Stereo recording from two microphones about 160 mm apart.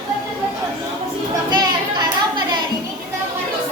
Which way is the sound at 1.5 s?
25° right (ahead or behind).